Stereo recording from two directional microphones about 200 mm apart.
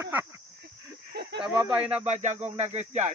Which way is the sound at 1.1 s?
60° right (ahead or behind).